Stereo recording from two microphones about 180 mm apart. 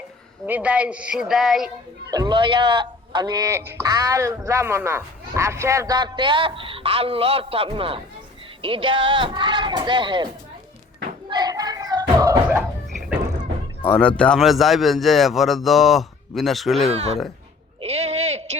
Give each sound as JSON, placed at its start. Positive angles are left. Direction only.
{"t": 0.4, "sound": "speech", "side_deg": -10}
{"t": 2.0, "sound": "speech", "side_deg": -20}
{"t": 11.3, "sound": "knock", "side_deg": -20}
{"t": 12.9, "sound": "a sound", "side_deg": 0}
{"t": 13.8, "sound": "a man's voice", "side_deg": 5}
{"t": 17.7, "sound": "sheep", "side_deg": -35}